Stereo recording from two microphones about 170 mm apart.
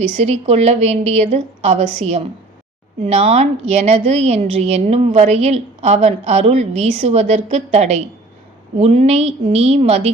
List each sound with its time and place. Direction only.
0.2 s a woman's voice: 40° right (ahead or behind)